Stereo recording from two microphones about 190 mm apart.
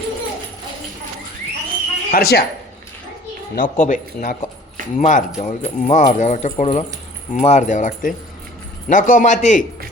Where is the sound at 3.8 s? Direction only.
45° left (ahead or behind).